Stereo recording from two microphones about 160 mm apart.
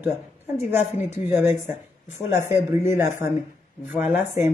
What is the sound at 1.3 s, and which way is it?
A man's voice, 15° right (ahead or behind).